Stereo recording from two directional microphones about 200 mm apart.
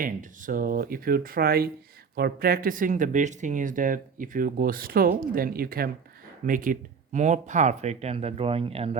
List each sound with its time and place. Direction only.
0.0 s speech: 40° right (ahead or behind)